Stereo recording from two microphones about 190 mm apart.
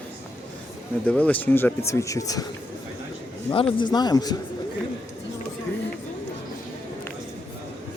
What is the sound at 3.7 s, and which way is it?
Speech, 20° left (ahead or behind).